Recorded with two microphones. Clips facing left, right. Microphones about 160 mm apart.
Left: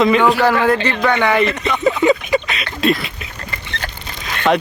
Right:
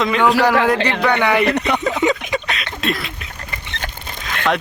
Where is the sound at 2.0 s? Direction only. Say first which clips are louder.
Left 4 dB; 20° right (ahead or behind).